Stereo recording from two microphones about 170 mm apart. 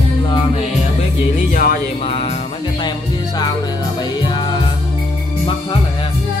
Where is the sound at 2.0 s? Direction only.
35° left (ahead or behind).